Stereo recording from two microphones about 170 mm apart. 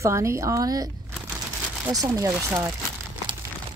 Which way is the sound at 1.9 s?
20° right (ahead or behind).